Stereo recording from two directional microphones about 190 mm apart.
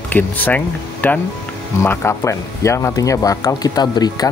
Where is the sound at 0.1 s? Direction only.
10° left (ahead or behind).